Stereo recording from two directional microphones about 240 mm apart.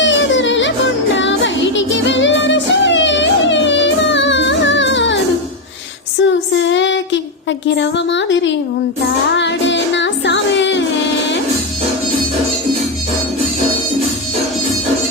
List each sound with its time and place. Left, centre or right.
0.0 s yodeling: left
1.1 s music: left
6.5 s child singing: left
7.8 s music: left